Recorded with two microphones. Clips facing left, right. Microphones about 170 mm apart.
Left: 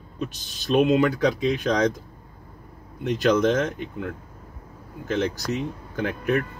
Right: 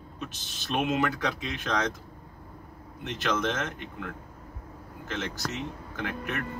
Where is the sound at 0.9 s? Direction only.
35° left (ahead or behind).